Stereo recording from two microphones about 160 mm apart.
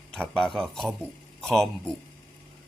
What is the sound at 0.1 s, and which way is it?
Speech, 5° left (ahead or behind).